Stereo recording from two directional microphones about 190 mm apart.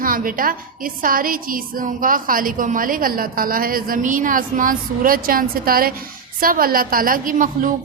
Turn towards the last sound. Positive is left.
turn(degrees=-45)  # may be behind; listen again after turning